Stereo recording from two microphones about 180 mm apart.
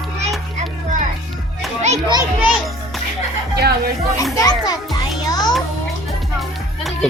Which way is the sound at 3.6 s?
60° right (ahead or behind).